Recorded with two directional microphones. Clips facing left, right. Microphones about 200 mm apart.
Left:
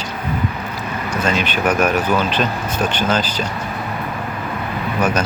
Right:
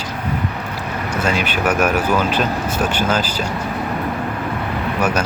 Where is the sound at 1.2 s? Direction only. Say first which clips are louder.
Left 1 dB; 10° right (ahead or behind).